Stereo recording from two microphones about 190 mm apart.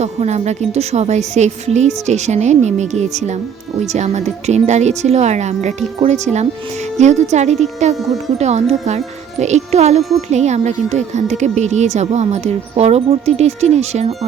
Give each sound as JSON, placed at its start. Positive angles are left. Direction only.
{"t": 0.0, "sound": "a woman's voice", "side_deg": -35}